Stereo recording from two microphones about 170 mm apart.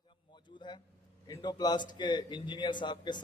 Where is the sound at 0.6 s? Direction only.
25° left (ahead or behind).